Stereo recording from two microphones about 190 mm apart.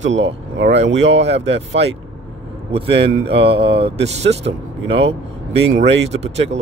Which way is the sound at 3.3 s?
25° right (ahead or behind).